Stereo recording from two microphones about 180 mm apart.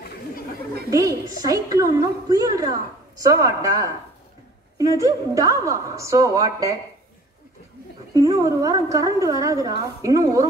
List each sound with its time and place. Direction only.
0.8 s a woman's voice: 20° right (ahead or behind)
8.1 s a woman's voice: 20° right (ahead or behind)